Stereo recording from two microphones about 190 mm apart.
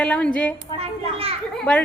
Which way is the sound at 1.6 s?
5° left (ahead or behind).